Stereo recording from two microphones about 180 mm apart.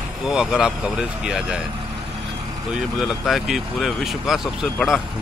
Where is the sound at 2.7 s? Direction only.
Centre (ahead or behind).